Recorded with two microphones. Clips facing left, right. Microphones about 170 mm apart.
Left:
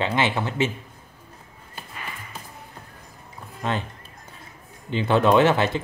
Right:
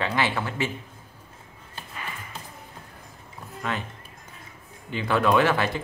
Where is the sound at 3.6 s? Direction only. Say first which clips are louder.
Left 4 dB; 30° left (ahead or behind).